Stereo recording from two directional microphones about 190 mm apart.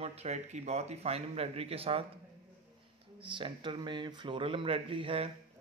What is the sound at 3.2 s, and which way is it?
Speech, 25° right (ahead or behind).